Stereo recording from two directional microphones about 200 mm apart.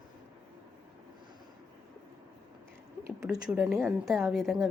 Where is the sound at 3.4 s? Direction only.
5° right (ahead or behind).